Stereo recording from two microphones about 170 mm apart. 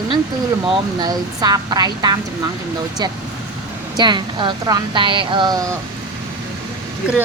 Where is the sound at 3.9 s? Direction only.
25° right (ahead or behind).